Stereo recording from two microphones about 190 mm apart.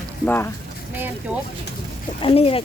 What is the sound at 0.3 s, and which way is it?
Speech, 10° left (ahead or behind).